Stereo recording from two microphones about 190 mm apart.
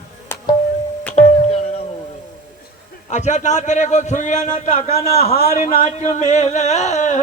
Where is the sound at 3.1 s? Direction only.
40° left (ahead or behind).